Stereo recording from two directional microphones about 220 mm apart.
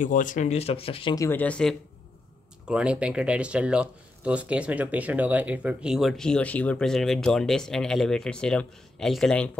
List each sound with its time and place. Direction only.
0.0 s speech: 35° left (ahead or behind); by 9.5 s 5° left (ahead or behind)